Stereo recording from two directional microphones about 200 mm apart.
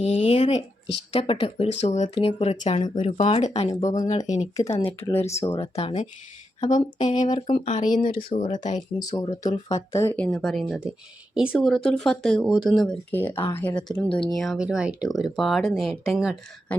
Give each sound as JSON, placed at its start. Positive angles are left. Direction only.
{"t": 0.0, "sound": "a sound", "side_deg": 30}
{"t": 1.1, "sound": "speech", "side_deg": 30}
{"t": 7.0, "sound": "speech", "side_deg": 20}
{"t": 7.3, "sound": "speech", "side_deg": 35}
{"t": 8.3, "sound": "speech", "side_deg": 25}
{"t": 8.5, "sound": "speech", "side_deg": 40}
{"t": 9.1, "sound": "speech", "side_deg": 20}